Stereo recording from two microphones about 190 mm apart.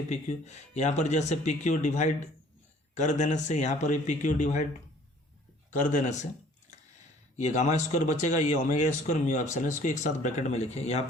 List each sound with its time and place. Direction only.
0.1 s a man's voice: 35° left (ahead or behind)
5.7 s a man's voice: 40° left (ahead or behind)
7.3 s a man's voice: 40° left (ahead or behind)